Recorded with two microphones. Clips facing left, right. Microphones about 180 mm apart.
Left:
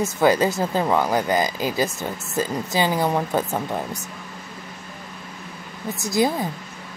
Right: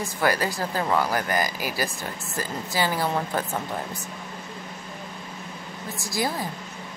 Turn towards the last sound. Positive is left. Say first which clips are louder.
# left 7 dB
turn(degrees=20)  # may be behind; listen again after turning